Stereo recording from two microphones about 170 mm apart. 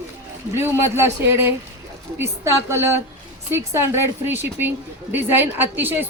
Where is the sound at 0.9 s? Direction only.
15° right (ahead or behind).